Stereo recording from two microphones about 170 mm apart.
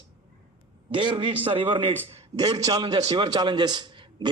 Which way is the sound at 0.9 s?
30° right (ahead or behind).